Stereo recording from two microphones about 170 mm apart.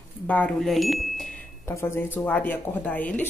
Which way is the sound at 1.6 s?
15° left (ahead or behind).